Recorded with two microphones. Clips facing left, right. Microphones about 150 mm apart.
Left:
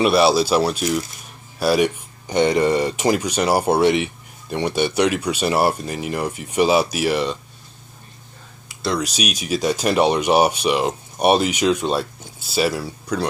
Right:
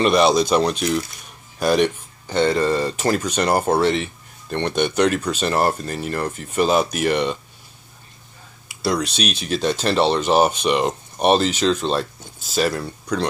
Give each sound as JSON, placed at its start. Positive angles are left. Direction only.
{"t": 0.0, "sound": "speech", "side_deg": 5}
{"t": 8.9, "sound": "speech", "side_deg": 10}